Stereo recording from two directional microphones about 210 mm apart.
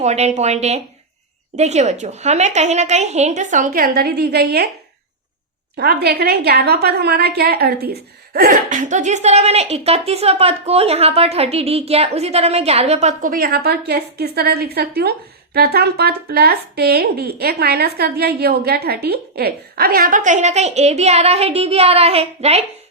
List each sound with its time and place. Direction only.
0.0 s speech: 30° right (ahead or behind); by 4.7 s 50° right (ahead or behind)
5.7 s speech: 50° right (ahead or behind); by 22.6 s 30° right (ahead or behind)